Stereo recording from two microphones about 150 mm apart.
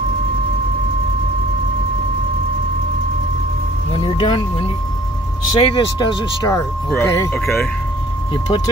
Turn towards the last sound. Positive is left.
turn(degrees=5)  # may be behind; listen again after turning